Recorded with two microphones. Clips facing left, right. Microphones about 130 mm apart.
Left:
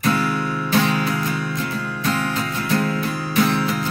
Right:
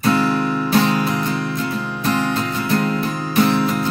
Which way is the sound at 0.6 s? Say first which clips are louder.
Right 1 dB; 20° right (ahead or behind).